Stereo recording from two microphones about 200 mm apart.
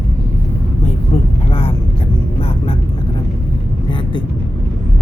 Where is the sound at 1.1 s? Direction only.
30° left (ahead or behind).